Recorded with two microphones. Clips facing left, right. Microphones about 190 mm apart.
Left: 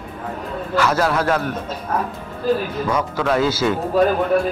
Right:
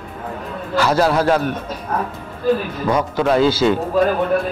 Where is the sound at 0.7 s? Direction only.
30° right (ahead or behind).